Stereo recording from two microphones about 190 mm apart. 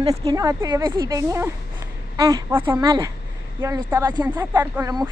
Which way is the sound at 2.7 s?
20° right (ahead or behind).